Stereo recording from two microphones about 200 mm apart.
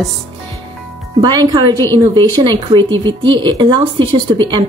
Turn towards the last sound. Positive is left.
turn(degrees=-25)  # may be behind; listen again after turning